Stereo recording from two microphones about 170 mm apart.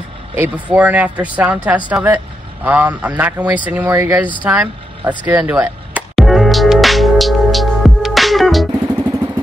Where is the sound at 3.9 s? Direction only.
20° right (ahead or behind).